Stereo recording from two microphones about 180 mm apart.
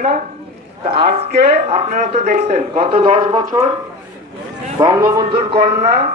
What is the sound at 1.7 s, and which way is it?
A man's voice, 35° right (ahead or behind).